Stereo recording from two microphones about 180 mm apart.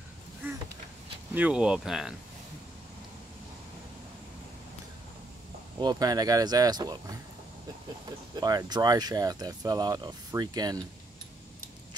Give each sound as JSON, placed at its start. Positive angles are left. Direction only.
{"t": 0.4, "sound": "vehicle", "side_deg": -10}
{"t": 1.3, "sound": "speech", "side_deg": -5}
{"t": 5.8, "sound": "speech", "side_deg": -25}
{"t": 8.4, "sound": "speech", "side_deg": -20}